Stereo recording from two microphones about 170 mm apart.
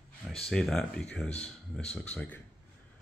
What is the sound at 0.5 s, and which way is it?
Speech, 5° left (ahead or behind).